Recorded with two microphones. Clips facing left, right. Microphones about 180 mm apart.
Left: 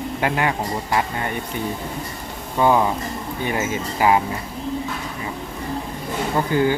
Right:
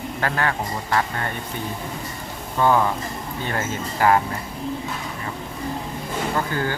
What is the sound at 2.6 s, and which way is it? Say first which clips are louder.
Speech: left 2 dB; 15° left (ahead or behind).